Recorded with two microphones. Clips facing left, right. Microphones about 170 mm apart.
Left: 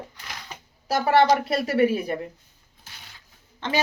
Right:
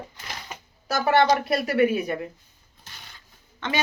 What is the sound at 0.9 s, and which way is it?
Speech, 30° left (ahead or behind).